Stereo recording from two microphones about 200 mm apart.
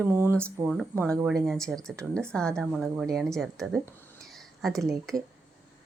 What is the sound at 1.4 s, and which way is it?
Speech, centre (ahead or behind).